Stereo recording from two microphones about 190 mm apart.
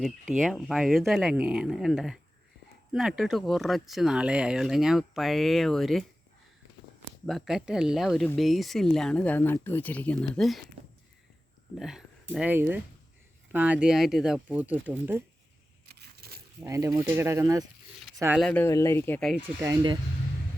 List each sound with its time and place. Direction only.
0.0 s speech: centre (ahead or behind)
7.3 s speech: centre (ahead or behind)
11.8 s speech: centre (ahead or behind)
15.9 s a sound: 55° right (ahead or behind)
16.6 s speech: 15° right (ahead or behind)
18.3 s speech: 5° left (ahead or behind)
19.4 s speech: 10° right (ahead or behind)